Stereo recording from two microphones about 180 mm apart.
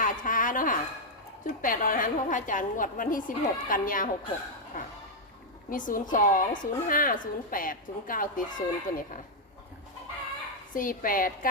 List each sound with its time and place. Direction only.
0.0 s a sound: 45° left (ahead or behind)
1.5 s a woman's voice: 50° left (ahead or behind)
4.7 s chink: 50° left (ahead or behind)
5.7 s a woman's voice: 45° left (ahead or behind)
10.8 s a woman's voice: 50° left (ahead or behind)